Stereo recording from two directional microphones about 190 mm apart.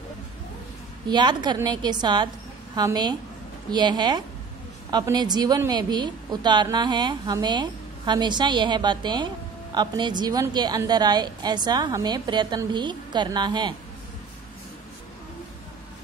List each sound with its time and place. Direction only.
1.0 s a woman's voice: 20° right (ahead or behind)